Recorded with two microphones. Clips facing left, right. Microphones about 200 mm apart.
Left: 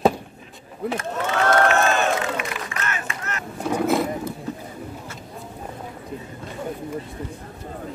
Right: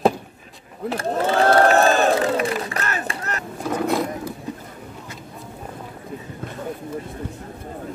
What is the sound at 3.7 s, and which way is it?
Roaring cats, centre (ahead or behind).